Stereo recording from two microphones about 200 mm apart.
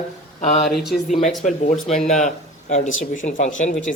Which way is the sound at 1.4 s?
35° left (ahead or behind).